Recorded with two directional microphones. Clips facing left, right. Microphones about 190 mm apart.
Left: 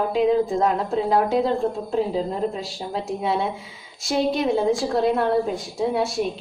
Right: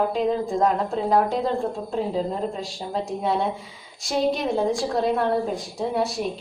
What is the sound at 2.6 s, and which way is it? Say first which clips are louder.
A woman's voice: even; 5° left (ahead or behind).